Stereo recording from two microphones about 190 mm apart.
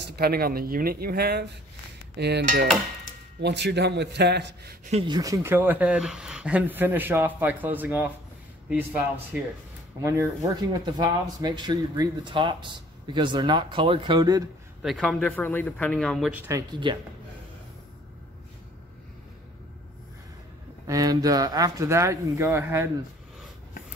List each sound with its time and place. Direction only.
0.0 s speech: 55° right (ahead or behind)
5.0 s speech: 20° right (ahead or behind)
9.3 s speech: 10° right (ahead or behind)
14.8 s speech: centre (ahead or behind)
16.4 s speech: 20° right (ahead or behind)
20.8 s speech: 20° right (ahead or behind)